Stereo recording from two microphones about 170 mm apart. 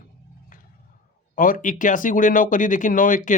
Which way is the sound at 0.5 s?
55° left (ahead or behind).